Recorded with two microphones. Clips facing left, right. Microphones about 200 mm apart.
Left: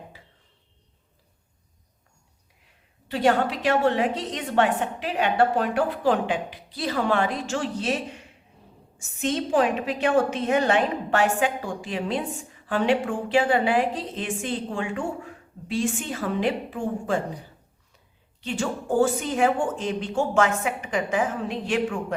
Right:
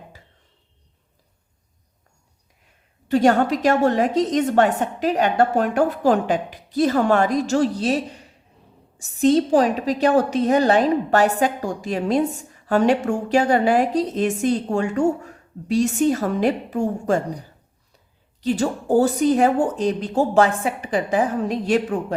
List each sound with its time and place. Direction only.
3.1 s a woman's voice: 45° right (ahead or behind)